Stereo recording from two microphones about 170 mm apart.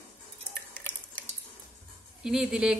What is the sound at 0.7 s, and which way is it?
Stir, 10° left (ahead or behind).